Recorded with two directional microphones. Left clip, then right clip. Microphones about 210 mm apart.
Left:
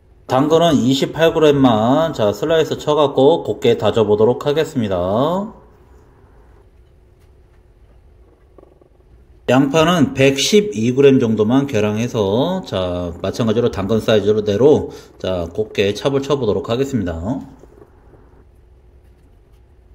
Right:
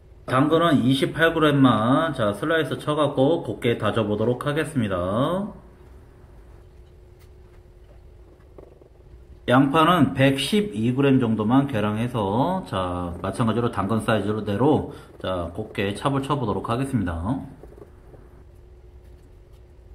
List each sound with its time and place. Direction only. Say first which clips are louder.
0.4 s a man's voice: left 6 dB; 20° left (ahead or behind)
9.5 s a man's voice: left 4 dB; 20° left (ahead or behind)